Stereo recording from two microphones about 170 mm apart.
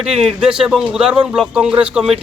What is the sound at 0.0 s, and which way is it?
A man's voice, 5° right (ahead or behind).